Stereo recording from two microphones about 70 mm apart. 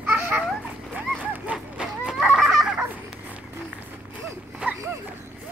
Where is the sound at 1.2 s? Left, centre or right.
Right.